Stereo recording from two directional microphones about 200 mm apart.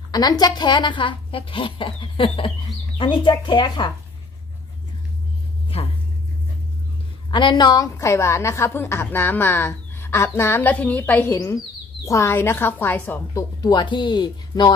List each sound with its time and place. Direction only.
0.1 s a woman's voice: 20° left (ahead or behind)
7.2 s a woman's voice: 25° left (ahead or behind)